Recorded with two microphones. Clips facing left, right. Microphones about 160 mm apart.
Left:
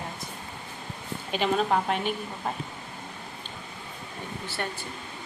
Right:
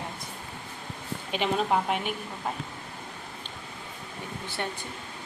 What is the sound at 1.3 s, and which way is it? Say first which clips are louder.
A woman's voice: left 1 dB; 15° right (ahead or behind).